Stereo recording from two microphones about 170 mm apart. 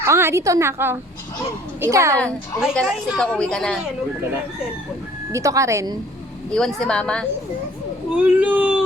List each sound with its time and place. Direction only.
0.0 s a woman's voice: 15° right (ahead or behind)
2.8 s a woman's voice: 5° left (ahead or behind)
5.3 s speech: 20° right (ahead or behind)
6.5 s a woman's voice: centre (ahead or behind)
8.1 s a woman's voice: 10° right (ahead or behind)